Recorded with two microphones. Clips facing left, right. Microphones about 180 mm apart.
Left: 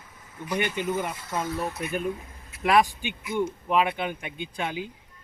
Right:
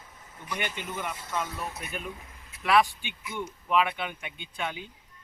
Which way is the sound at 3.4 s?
35° left (ahead or behind).